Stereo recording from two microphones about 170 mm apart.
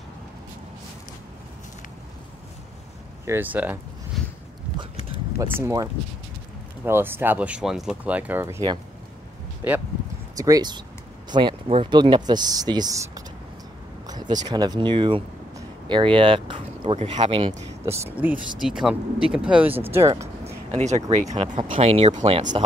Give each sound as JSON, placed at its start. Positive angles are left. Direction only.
{"t": 3.3, "sound": "speech", "side_deg": -10}
{"t": 5.6, "sound": "speech", "side_deg": -20}
{"t": 9.6, "sound": "speech", "side_deg": -15}
{"t": 14.0, "sound": "a sound", "side_deg": -25}
{"t": 14.5, "sound": "speech", "side_deg": -25}
{"t": 17.8, "sound": "speech", "side_deg": -15}
{"t": 18.6, "sound": "speech", "side_deg": -5}
{"t": 20.4, "sound": "speech", "side_deg": -40}